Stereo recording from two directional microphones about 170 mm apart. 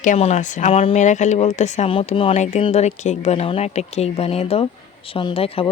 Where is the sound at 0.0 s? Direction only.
45° left (ahead or behind).